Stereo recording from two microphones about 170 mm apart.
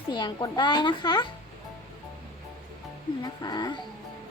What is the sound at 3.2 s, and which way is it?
Speech, 25° left (ahead or behind).